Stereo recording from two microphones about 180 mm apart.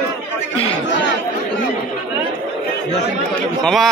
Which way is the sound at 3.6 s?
Centre (ahead or behind).